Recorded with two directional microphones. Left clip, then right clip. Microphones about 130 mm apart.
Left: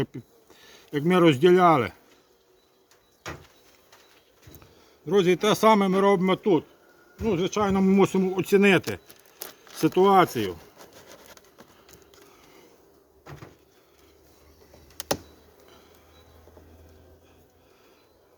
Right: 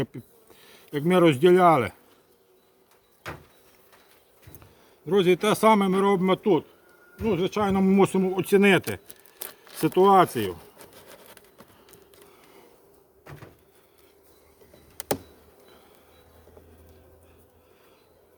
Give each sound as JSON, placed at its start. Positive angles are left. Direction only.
{"t": 0.1, "sound": "speech", "side_deg": 0}
{"t": 0.6, "sound": "a sound", "side_deg": 0}
{"t": 0.9, "sound": "speech", "side_deg": 0}
{"t": 4.6, "sound": "speech", "side_deg": -5}
{"t": 12.3, "sound": "a sound", "side_deg": -10}
{"t": 13.2, "sound": "door", "side_deg": -15}